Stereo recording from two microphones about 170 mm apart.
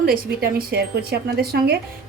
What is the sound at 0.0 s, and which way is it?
A woman's voice, 60° right (ahead or behind).